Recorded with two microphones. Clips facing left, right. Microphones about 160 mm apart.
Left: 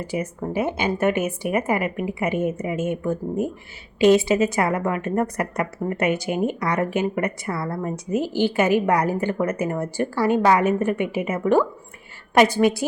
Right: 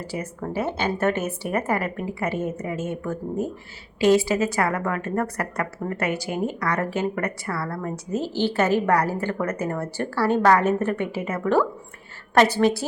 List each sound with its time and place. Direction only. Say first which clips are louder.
0.0 s a woman's voice: left 4 dB; 15° left (ahead or behind)